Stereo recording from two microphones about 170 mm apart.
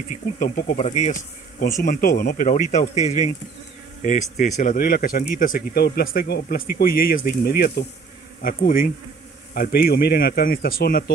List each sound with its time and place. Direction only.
0.4 s speech: 55° left (ahead or behind)
0.7 s speech: 40° left (ahead or behind)
1.8 s speech: 55° left (ahead or behind)